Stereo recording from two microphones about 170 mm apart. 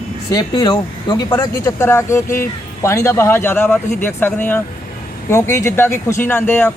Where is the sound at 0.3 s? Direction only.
20° left (ahead or behind).